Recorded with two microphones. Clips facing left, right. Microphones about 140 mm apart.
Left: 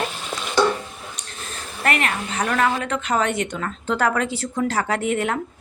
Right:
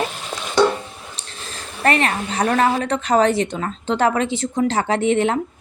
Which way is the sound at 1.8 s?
30° right (ahead or behind).